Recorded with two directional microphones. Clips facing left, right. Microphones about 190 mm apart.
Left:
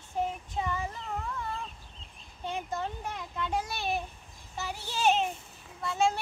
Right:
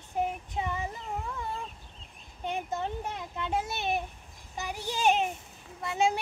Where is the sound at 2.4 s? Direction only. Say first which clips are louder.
Right 2 dB; 20° right (ahead or behind).